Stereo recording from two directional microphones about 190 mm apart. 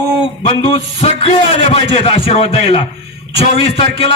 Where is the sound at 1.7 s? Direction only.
30° left (ahead or behind).